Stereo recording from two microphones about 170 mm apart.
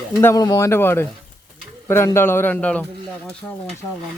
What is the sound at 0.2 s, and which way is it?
Speech, 15° left (ahead or behind).